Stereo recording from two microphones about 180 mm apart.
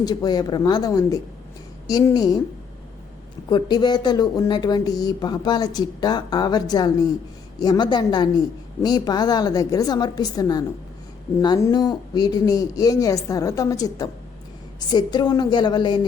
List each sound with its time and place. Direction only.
0.0 s speech: 20° left (ahead or behind)
3.5 s speech: 25° left (ahead or behind)